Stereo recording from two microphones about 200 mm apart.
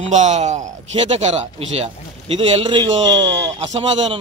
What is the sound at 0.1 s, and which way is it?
A man's voice, 35° right (ahead or behind).